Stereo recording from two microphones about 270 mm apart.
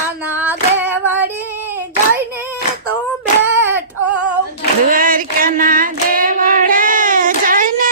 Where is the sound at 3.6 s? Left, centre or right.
Centre.